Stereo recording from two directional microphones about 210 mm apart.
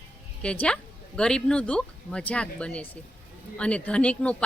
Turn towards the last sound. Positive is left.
turn(degrees=5)  # may be behind; listen again after turning